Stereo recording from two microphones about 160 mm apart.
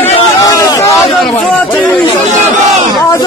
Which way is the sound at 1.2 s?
Centre (ahead or behind).